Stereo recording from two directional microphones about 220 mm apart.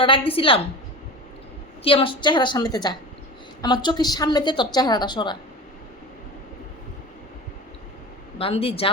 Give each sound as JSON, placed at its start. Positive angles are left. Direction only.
{"t": 0.0, "sound": "a woman's voice", "side_deg": 25}
{"t": 1.8, "sound": "a woman's voice", "side_deg": 25}
{"t": 8.4, "sound": "a woman's voice", "side_deg": 25}